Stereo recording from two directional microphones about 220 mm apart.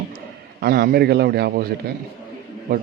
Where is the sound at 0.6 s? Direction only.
45° right (ahead or behind).